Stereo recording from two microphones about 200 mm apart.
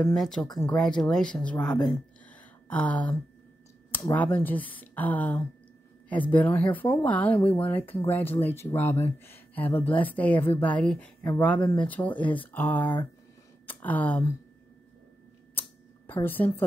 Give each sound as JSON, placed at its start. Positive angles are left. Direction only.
{"t": 0.0, "sound": "speech", "side_deg": 0}
{"t": 12.8, "sound": "speech", "side_deg": 25}
{"t": 13.7, "sound": "speech", "side_deg": 10}
{"t": 16.1, "sound": "speech", "side_deg": 10}